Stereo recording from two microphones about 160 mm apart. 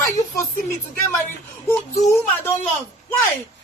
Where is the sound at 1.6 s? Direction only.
15° left (ahead or behind).